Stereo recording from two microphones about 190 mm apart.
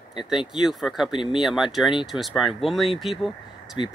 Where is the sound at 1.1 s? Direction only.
25° left (ahead or behind).